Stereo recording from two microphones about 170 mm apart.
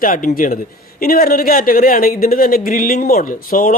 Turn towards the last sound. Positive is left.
turn(degrees=55)  # may be behind; listen again after turning